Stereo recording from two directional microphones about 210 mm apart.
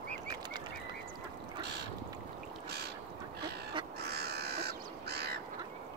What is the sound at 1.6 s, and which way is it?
Boat, 50° right (ahead or behind).